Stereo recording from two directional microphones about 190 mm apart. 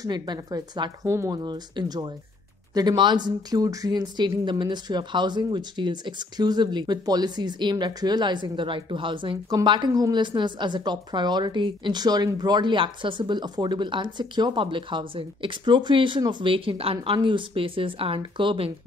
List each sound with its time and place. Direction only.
0.0 s speech: 20° right (ahead or behind)